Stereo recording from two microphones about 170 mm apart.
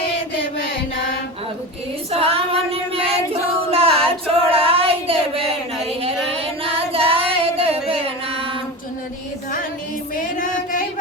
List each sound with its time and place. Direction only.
2.1 s child singing: 35° right (ahead or behind)
6.0 s female singing: 35° right (ahead or behind)
10.3 s a sound: 50° left (ahead or behind)